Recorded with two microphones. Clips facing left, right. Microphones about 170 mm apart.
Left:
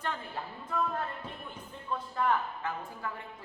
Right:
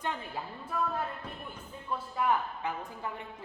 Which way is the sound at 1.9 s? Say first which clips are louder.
Even; 10° right (ahead or behind).